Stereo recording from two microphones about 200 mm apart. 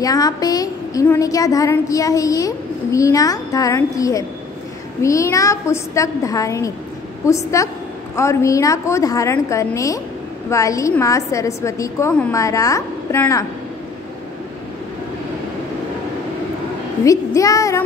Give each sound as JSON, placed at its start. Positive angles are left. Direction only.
{"t": 0.0, "sound": "a woman's voice", "side_deg": 20}
{"t": 17.0, "sound": "a woman's voice", "side_deg": 15}